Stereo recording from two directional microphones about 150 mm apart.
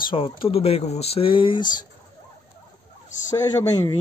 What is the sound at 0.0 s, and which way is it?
Speech, 35° left (ahead or behind).